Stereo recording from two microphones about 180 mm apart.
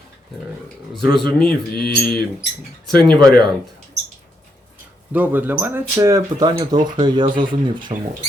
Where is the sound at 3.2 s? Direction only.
25° right (ahead or behind).